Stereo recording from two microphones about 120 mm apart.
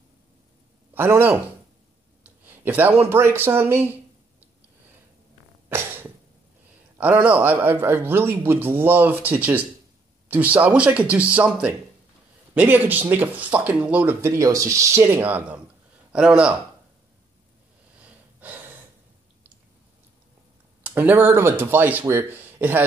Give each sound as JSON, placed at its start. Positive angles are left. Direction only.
{"t": 0.9, "sound": "a man's voice", "side_deg": -20}
{"t": 5.7, "sound": "cough", "side_deg": -20}
{"t": 7.0, "sound": "a man's voice", "side_deg": -15}
{"t": 14.2, "sound": "a man's voice", "side_deg": -25}
{"t": 18.0, "sound": "a sound", "side_deg": -15}
{"t": 20.8, "sound": "a man's voice", "side_deg": -15}